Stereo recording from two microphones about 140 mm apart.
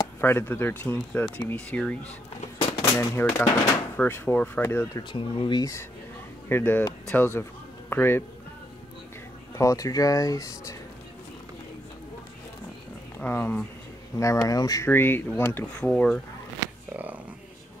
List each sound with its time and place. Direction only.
0.2 s speech: 15° left (ahead or behind)
2.8 s speech: 20° left (ahead or behind)
5.1 s speech: 40° left (ahead or behind); by 8.2 s 15° left (ahead or behind)
9.6 s speech: 25° left (ahead or behind)
13.2 s speech: 15° left (ahead or behind)
14.1 s speech: 25° left (ahead or behind); by 16.2 s 5° left (ahead or behind)
16.9 s speech: 10° right (ahead or behind)